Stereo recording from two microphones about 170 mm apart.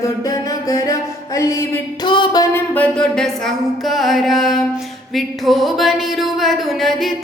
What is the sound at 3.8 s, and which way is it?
Singing, centre (ahead or behind).